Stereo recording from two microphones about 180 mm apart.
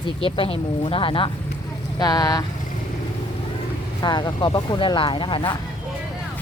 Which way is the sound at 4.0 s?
25° left (ahead or behind).